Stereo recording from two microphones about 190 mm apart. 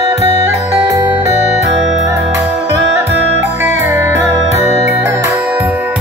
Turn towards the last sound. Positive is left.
turn(degrees=-10)  # may be behind; listen again after turning